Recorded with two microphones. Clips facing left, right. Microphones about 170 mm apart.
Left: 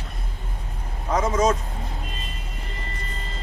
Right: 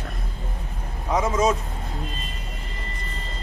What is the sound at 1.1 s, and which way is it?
Speech, 5° right (ahead or behind).